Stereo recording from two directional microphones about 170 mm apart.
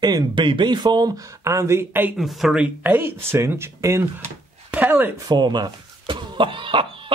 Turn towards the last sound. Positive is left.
turn(degrees=-30)  # may be behind; listen again after turning